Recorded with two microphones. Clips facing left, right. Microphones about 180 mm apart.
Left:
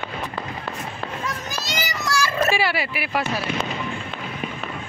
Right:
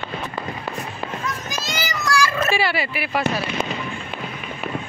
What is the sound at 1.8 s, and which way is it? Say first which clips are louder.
Child singing: right 4 dB; 25° left (ahead or behind).